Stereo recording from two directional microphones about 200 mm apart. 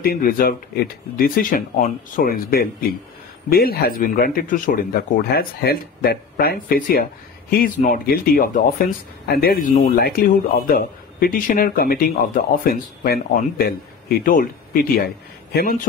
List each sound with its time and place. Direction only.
0.0 s a man's voice: 45° left (ahead or behind)